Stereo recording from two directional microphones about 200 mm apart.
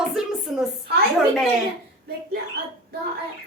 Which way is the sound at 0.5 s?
Centre (ahead or behind).